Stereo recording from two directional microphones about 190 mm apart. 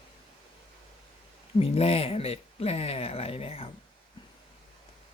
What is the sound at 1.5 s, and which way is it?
Speech, 30° left (ahead or behind).